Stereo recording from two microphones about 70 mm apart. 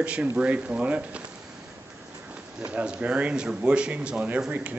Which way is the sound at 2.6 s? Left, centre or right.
Centre.